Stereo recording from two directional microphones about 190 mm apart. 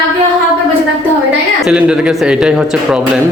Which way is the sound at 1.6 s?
5° right (ahead or behind).